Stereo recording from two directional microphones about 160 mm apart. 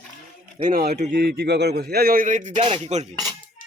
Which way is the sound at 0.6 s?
65° right (ahead or behind).